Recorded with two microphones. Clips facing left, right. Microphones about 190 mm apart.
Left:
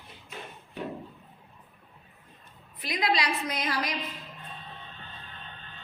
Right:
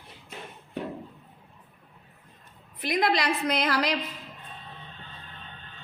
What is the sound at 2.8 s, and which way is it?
A woman's voice, 50° right (ahead or behind).